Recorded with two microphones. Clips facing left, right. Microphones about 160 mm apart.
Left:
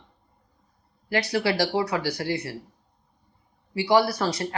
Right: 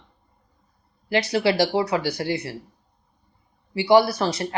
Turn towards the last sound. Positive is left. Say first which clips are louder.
# right 4 dB
turn(degrees=-25)  # may be behind; listen again after turning